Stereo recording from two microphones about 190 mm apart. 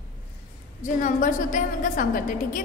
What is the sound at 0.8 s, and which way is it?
A woman's voice, 40° left (ahead or behind).